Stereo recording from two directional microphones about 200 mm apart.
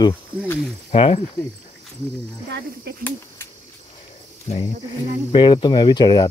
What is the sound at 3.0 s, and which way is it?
Cricket, 10° left (ahead or behind).